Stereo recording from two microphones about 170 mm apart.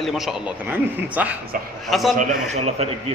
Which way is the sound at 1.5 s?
55° right (ahead or behind).